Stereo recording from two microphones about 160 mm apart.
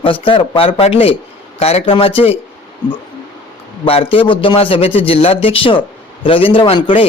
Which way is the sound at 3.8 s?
35° left (ahead or behind).